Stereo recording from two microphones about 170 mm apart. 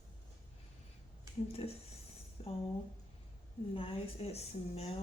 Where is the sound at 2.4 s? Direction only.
30° left (ahead or behind).